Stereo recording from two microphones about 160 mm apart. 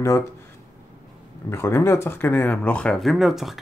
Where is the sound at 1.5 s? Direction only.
15° left (ahead or behind); by 3.5 s centre (ahead or behind).